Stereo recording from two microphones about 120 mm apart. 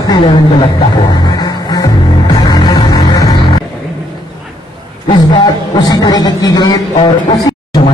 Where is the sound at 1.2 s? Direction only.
35° left (ahead or behind).